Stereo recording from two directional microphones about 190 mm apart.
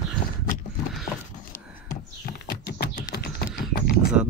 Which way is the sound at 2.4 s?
55° left (ahead or behind).